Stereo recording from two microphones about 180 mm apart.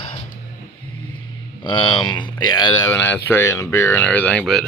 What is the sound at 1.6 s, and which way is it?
Speech, 25° left (ahead or behind).